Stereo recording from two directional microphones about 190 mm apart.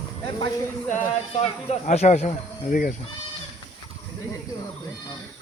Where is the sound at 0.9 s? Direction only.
35° left (ahead or behind).